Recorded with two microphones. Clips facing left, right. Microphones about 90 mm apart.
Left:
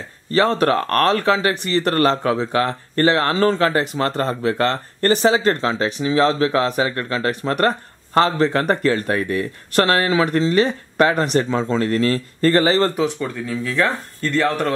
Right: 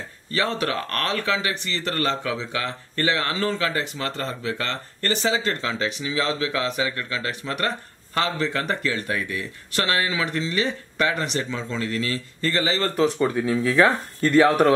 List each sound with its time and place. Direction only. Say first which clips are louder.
0.3 s speech: left 8 dB; 40° left (ahead or behind)
13.2 s speech: right 3 dB; 5° right (ahead or behind)